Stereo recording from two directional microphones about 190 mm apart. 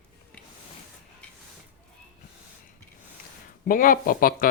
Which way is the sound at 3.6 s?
45° left (ahead or behind).